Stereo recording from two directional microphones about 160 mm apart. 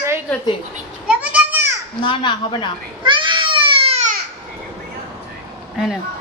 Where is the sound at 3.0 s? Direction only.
30° right (ahead or behind).